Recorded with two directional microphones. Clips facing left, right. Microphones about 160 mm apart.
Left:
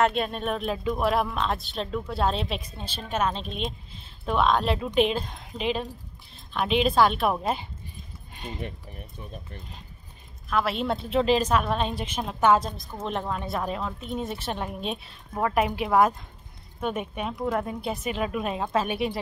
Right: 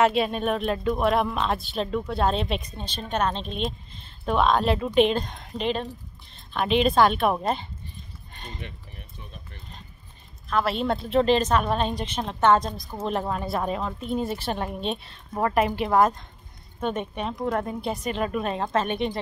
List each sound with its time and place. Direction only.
0.0 s speech: centre (ahead or behind)
8.5 s speech: 45° left (ahead or behind)
10.5 s speech: centre (ahead or behind)